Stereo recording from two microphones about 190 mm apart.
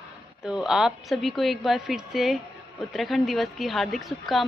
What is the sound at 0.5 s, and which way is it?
A woman's voice, 5° right (ahead or behind).